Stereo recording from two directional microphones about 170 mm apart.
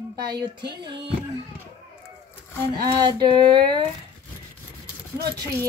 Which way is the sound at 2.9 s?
25° right (ahead or behind).